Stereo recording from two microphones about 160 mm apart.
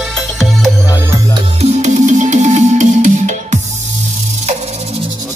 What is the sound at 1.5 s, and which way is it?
Music, 45° right (ahead or behind).